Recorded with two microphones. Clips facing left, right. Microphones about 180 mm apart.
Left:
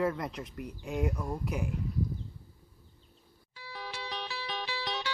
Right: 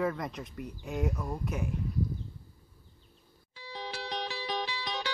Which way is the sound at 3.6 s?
20° right (ahead or behind).